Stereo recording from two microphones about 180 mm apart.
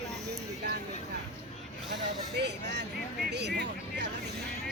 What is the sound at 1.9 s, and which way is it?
Speech, 70° right (ahead or behind).